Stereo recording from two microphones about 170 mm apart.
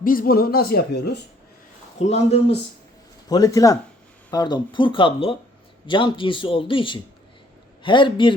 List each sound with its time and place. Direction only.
0.0 s speech: 55° left (ahead or behind); by 1.2 s 75° left (ahead or behind)
2.0 s speech: 40° left (ahead or behind)
3.2 s a man's voice: 20° left (ahead or behind)